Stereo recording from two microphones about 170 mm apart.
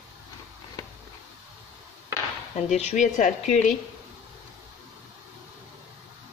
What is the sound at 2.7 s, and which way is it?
Speech, 40° left (ahead or behind).